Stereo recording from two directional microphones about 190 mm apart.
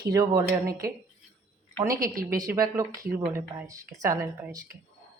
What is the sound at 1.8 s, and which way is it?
Speech, 20° right (ahead or behind).